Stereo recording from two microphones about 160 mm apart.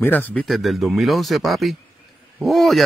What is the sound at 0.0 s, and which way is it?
Speech, 10° left (ahead or behind).